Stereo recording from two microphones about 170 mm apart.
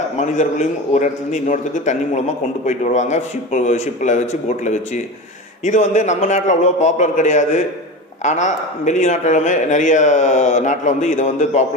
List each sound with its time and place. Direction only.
0.2 s a man's voice: 45° left (ahead or behind)